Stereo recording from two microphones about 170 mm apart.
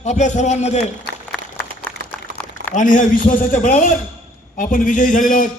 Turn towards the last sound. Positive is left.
turn(degrees=50)  # may be behind; listen again after turning